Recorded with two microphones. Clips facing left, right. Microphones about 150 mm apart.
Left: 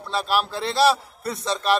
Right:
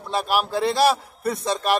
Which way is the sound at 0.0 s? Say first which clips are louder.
Right 1 dB; 15° right (ahead or behind).